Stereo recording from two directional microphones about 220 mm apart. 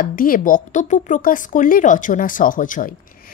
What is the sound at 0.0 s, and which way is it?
A woman's voice, 40° left (ahead or behind).